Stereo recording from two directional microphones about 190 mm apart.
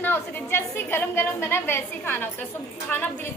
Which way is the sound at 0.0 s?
10° left (ahead or behind).